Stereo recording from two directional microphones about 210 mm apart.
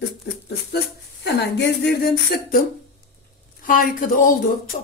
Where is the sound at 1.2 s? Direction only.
50° left (ahead or behind).